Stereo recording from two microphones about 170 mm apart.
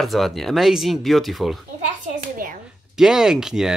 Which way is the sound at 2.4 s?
55° right (ahead or behind).